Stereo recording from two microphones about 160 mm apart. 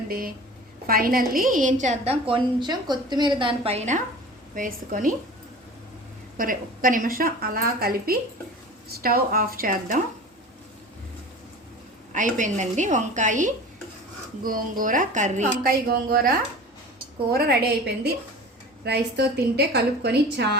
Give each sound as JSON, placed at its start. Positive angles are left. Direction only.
{"t": 0.1, "sound": "a woman's voice", "side_deg": -65}
{"t": 4.5, "sound": "speech", "side_deg": -55}
{"t": 6.3, "sound": "speech", "side_deg": -60}
{"t": 12.1, "sound": "a woman's voice", "side_deg": -50}
{"t": 15.9, "sound": "a woman's voice", "side_deg": -70}
{"t": 17.3, "sound": "a woman's voice", "side_deg": -75}